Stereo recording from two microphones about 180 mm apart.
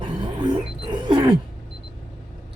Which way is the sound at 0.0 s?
25° right (ahead or behind).